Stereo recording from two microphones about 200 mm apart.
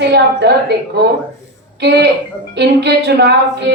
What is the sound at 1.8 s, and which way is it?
A woman's voice, 55° right (ahead or behind).